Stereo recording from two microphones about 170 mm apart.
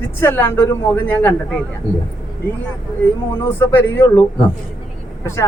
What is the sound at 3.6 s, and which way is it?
Speech, 10° left (ahead or behind).